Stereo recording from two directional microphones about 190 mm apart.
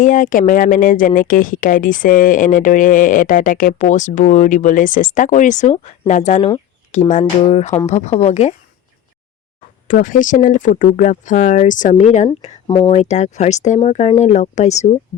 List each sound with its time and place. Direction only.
0.0 s speech: 45° left (ahead or behind)
9.8 s speech: 45° left (ahead or behind)
12.6 s speech: 25° left (ahead or behind)
12.9 s speech: 35° left (ahead or behind)